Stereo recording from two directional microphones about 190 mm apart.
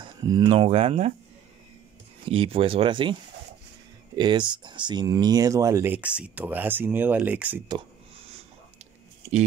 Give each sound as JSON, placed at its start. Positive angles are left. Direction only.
{"t": 0.0, "sound": "speech", "side_deg": -25}
{"t": 2.2, "sound": "speech", "side_deg": -30}
{"t": 4.2, "sound": "speech", "side_deg": -25}